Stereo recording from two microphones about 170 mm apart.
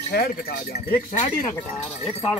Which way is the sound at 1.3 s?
25° left (ahead or behind).